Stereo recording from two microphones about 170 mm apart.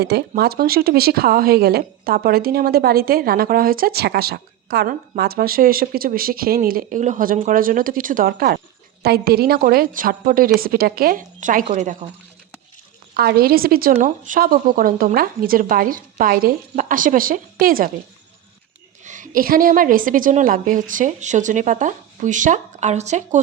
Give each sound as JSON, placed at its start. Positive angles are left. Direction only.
{"t": 0.0, "sound": "speech", "side_deg": -70}
{"t": 13.1, "sound": "speech", "side_deg": -65}
{"t": 19.0, "sound": "a woman's voice", "side_deg": -50}